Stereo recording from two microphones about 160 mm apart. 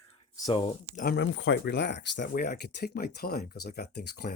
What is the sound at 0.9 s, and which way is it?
Speech, 75° left (ahead or behind).